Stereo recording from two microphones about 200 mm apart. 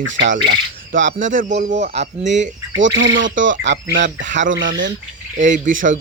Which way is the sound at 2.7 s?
65° right (ahead or behind).